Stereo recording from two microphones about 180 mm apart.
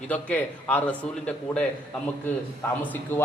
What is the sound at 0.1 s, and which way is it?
Speech, 10° left (ahead or behind).